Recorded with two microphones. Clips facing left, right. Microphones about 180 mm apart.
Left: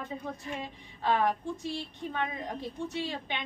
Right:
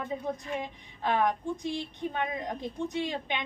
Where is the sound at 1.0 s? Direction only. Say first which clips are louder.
Even; 15° right (ahead or behind).